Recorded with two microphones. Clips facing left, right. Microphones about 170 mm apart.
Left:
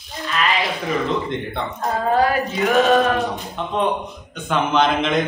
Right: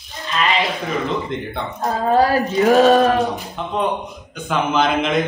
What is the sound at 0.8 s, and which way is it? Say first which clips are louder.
Speech: left 1 dB; centre (ahead or behind).